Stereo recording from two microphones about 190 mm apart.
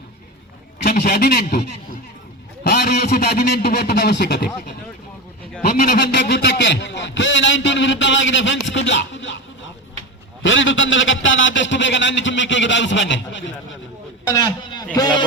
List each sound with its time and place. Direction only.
0.8 s a man's voice: 55° left (ahead or behind)
2.6 s a man's voice: 60° left (ahead or behind)
5.6 s a man's voice: 55° left (ahead or behind); by 9.4 s 75° left (ahead or behind)
10.4 s a man's voice: 80° left
14.3 s a man's voice: 20° left (ahead or behind)